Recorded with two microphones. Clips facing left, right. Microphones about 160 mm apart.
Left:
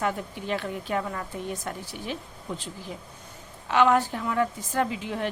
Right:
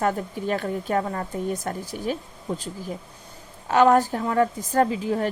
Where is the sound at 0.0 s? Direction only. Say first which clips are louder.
Right 5 dB; 40° right (ahead or behind).